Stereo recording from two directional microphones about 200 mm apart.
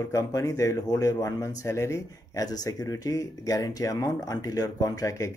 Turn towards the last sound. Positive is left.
turn(degrees=15)  # may be behind; listen again after turning